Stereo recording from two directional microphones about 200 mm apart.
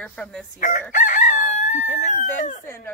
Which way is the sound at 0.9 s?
40° left (ahead or behind).